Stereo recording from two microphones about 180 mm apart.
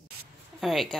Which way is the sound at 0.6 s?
Centre (ahead or behind).